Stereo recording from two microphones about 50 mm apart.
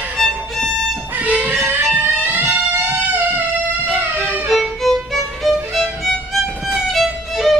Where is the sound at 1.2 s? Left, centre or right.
Right.